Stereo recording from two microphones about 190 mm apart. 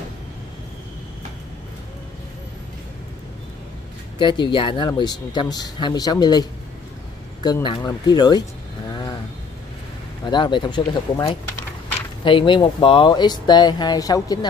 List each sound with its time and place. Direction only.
4.2 s speech: 25° left (ahead or behind)
7.4 s speech: 25° left (ahead or behind)
10.2 s speech: 25° left (ahead or behind)